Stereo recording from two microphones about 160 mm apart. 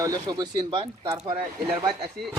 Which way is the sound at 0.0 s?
25° right (ahead or behind).